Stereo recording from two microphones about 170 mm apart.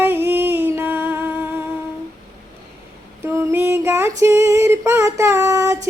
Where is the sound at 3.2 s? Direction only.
15° right (ahead or behind).